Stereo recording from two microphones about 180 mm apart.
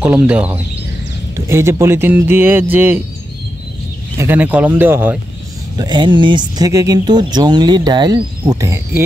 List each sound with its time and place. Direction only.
0.0 s speech: 5° right (ahead or behind)
4.2 s speech: 10° right (ahead or behind)
5.8 s speech: 25° right (ahead or behind)